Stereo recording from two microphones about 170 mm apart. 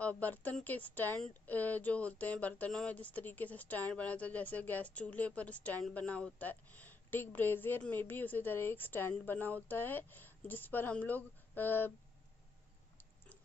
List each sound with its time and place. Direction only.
0.0 s speech: 10° left (ahead or behind)